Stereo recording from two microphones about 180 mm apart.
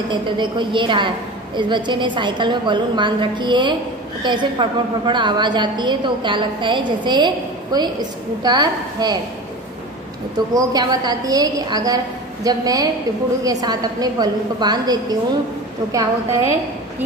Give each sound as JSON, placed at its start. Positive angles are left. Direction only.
{"t": 0.1, "sound": "a woman's voice", "side_deg": -25}
{"t": 10.5, "sound": "a woman's voice", "side_deg": -20}